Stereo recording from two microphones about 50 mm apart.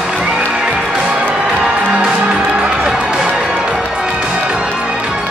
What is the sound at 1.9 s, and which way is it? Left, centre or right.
Music, right.